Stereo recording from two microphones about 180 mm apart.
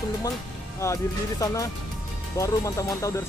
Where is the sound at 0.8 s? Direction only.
20° left (ahead or behind).